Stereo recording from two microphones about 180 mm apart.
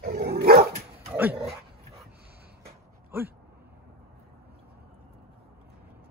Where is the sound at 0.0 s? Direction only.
60° right (ahead or behind).